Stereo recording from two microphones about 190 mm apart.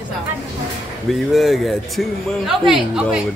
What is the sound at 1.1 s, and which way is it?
Speech, centre (ahead or behind).